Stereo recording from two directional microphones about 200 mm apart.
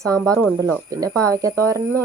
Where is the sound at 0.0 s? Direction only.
15° right (ahead or behind).